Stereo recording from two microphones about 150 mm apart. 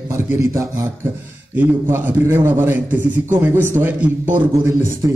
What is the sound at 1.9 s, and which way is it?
A man's voice, 15° right (ahead or behind).